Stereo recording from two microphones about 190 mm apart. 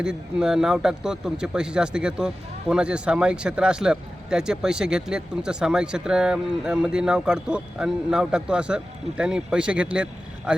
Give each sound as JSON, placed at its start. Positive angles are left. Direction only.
{"t": 0.0, "sound": "speech", "side_deg": -5}